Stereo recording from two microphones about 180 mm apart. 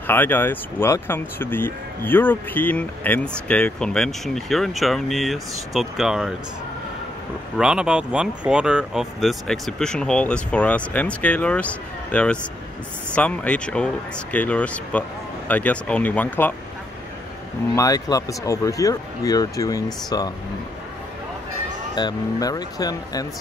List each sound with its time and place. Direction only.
0.0 s speech: 10° left (ahead or behind)
7.5 s speech: 5° right (ahead or behind)
17.7 s speech: 20° left (ahead or behind)
21.9 s speech: 20° left (ahead or behind)